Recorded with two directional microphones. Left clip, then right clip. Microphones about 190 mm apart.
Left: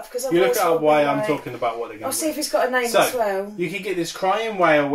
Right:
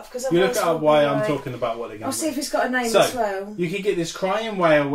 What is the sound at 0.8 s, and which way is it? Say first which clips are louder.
Speech: right 1 dB; 15° right (ahead or behind).